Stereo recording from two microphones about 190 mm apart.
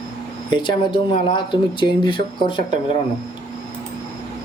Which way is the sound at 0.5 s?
25° left (ahead or behind).